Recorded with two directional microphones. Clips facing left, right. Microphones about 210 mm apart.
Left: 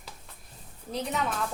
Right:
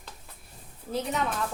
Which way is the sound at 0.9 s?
Centre (ahead or behind).